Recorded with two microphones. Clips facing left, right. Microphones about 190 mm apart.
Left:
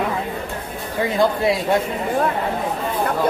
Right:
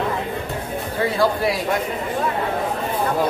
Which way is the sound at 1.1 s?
20° left (ahead or behind).